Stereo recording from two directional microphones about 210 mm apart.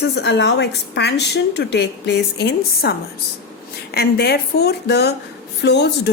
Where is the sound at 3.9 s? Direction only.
50° left (ahead or behind).